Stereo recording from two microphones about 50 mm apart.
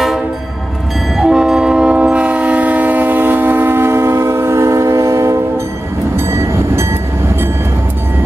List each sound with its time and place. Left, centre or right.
1.1 s train: centre; by 5.4 s right
6.1 s train: right